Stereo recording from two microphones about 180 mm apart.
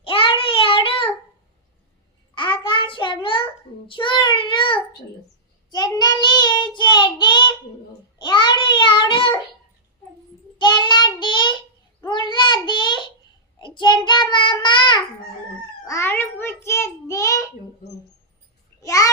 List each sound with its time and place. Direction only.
0.0 s child singing: 30° left (ahead or behind)
2.3 s child singing: 25° left (ahead or behind)
8.2 s babbling: 25° left (ahead or behind)
10.6 s child singing: 25° left (ahead or behind)
15.9 s child singing: 15° left (ahead or behind)
18.8 s a sound: 20° left (ahead or behind)